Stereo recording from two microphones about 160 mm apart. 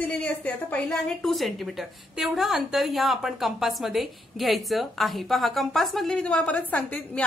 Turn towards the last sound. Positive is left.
turn(degrees=10)  # may be behind; listen again after turning